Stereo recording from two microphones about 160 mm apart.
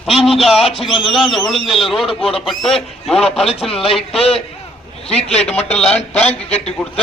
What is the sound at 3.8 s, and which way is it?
Speech, 35° left (ahead or behind).